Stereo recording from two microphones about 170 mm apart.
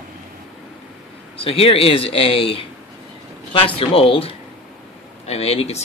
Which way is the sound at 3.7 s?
35° left (ahead or behind).